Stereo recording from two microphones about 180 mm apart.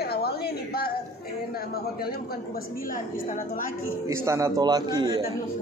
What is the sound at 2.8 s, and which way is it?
Speech, 50° left (ahead or behind).